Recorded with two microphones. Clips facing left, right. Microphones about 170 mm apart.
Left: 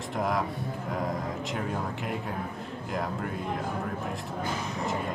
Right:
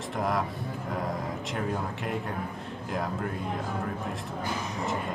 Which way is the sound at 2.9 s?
Centre (ahead or behind).